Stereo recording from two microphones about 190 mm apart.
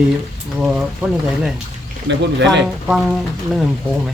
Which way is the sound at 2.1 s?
70° right (ahead or behind).